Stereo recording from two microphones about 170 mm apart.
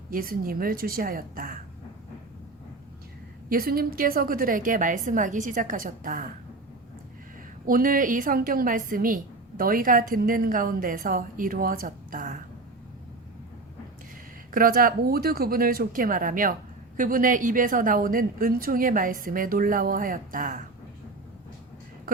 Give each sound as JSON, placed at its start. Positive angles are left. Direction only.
{"t": 0.1, "sound": "a woman's voice", "side_deg": -60}
{"t": 3.5, "sound": "a woman's voice", "side_deg": -60}
{"t": 7.7, "sound": "a woman's voice", "side_deg": -55}
{"t": 14.5, "sound": "a woman's voice", "side_deg": -55}